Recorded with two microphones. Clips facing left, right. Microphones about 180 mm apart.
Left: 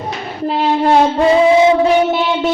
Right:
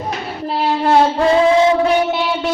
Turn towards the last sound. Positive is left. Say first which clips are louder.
# left 2 dB
turn(degrees=15)  # may be behind; listen again after turning